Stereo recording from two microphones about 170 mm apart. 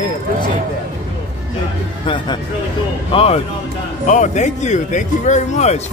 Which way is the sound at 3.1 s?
35° left (ahead or behind).